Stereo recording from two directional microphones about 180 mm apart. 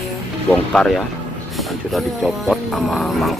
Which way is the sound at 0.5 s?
5° left (ahead or behind).